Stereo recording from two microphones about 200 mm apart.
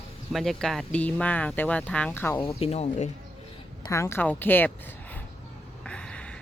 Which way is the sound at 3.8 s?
15° left (ahead or behind).